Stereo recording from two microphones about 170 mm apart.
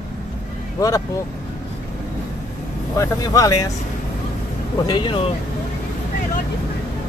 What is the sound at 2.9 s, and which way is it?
Speech, 20° left (ahead or behind).